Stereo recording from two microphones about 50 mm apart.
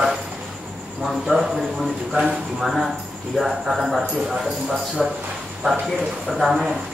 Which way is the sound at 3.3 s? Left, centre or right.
Centre.